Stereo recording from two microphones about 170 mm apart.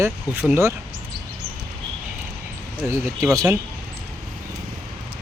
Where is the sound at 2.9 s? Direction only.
15° right (ahead or behind).